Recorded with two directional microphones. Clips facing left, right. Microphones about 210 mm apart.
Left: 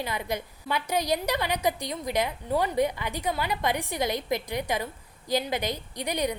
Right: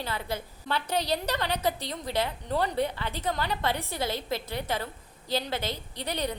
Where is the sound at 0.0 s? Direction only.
15° left (ahead or behind).